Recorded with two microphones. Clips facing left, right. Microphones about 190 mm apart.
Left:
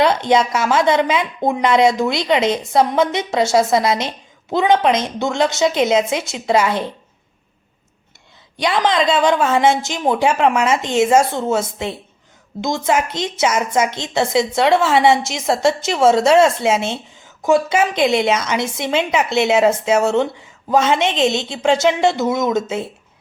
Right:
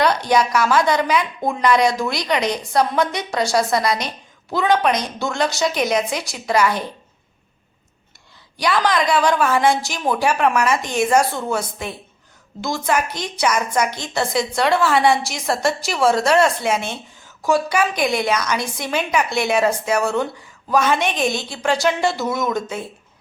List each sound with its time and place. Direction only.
0.0 s a woman's voice: 25° left (ahead or behind)
8.5 s a woman's voice: 20° left (ahead or behind)